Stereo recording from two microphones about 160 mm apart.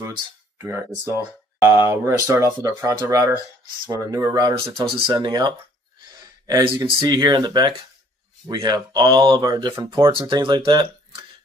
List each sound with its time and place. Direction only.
0.6 s speech: 15° right (ahead or behind)
6.0 s a sound: 25° right (ahead or behind)
6.9 s speech: 30° right (ahead or behind)